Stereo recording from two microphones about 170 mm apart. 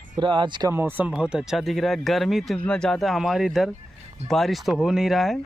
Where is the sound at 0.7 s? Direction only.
10° right (ahead or behind).